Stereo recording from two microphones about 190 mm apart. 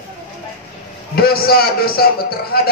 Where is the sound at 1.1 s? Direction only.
55° left (ahead or behind).